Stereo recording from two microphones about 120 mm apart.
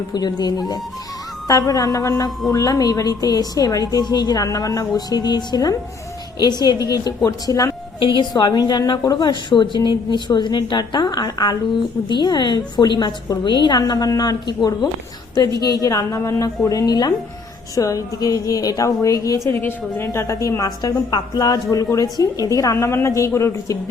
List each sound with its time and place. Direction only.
0.1 s a woman's voice: 35° left (ahead or behind)
7.9 s a woman's voice: 40° left (ahead or behind); by 23.7 s 25° left (ahead or behind)